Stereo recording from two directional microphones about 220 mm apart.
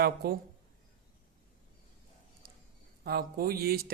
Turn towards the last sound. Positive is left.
turn(degrees=-45)  # may be behind; listen again after turning